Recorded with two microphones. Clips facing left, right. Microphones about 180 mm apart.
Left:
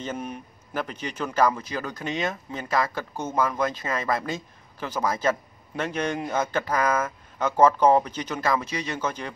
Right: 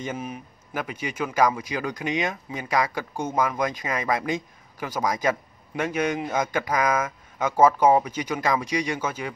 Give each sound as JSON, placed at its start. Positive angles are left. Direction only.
{"t": 0.0, "sound": "a man's voice", "side_deg": -10}